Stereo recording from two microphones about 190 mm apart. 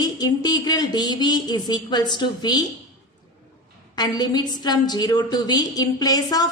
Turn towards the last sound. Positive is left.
turn(degrees=20)  # may be behind; listen again after turning